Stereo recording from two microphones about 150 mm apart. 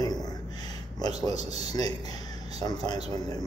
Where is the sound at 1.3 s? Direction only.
25° left (ahead or behind).